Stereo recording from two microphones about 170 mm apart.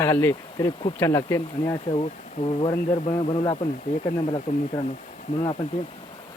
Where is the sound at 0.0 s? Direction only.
15° left (ahead or behind).